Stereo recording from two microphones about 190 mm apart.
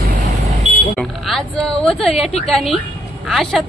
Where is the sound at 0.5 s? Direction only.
Centre (ahead or behind).